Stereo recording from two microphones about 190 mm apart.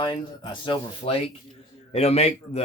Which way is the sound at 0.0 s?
25° left (ahead or behind).